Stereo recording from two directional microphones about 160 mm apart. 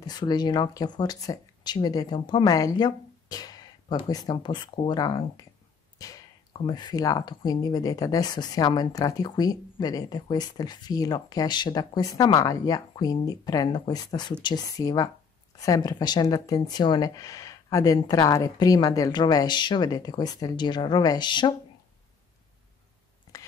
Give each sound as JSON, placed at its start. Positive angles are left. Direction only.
{"t": 0.0, "sound": "speech", "side_deg": 25}